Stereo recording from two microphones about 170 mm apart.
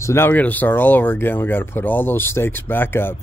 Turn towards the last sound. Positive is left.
turn(degrees=15)  # may be behind; listen again after turning